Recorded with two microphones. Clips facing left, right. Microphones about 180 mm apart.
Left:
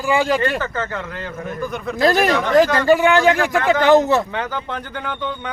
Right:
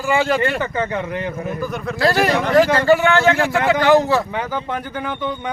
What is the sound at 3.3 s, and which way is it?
Speech, 15° right (ahead or behind).